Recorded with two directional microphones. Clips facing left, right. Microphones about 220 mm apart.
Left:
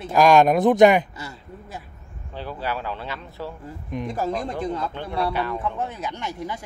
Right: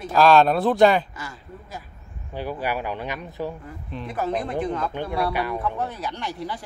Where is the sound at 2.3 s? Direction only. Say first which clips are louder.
Right 2 dB; 15° right (ahead or behind).